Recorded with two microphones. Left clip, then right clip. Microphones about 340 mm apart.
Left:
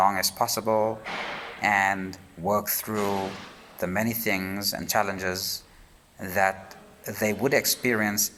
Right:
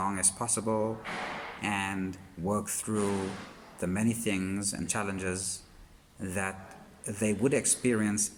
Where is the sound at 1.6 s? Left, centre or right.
Centre.